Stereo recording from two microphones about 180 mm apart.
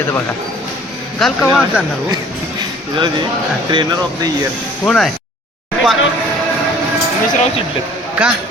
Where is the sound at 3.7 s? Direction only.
20° right (ahead or behind).